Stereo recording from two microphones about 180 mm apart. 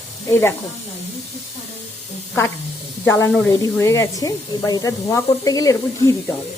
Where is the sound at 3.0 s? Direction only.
10° left (ahead or behind).